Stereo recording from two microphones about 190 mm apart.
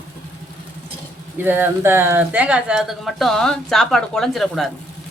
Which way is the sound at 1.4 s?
10° right (ahead or behind).